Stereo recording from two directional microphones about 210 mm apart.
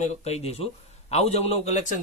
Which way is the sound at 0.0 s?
30° left (ahead or behind).